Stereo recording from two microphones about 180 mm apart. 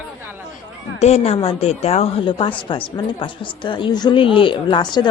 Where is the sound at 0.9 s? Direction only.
35° left (ahead or behind).